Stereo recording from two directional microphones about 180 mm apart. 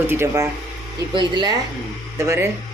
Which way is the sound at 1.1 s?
25° right (ahead or behind).